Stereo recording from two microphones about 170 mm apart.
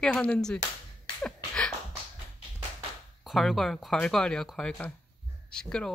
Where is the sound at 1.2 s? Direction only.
5° left (ahead or behind).